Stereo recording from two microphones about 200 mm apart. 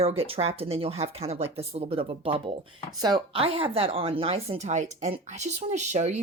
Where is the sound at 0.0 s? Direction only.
30° right (ahead or behind).